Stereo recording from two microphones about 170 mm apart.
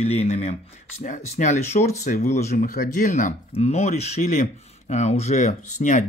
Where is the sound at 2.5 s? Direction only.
55° left (ahead or behind).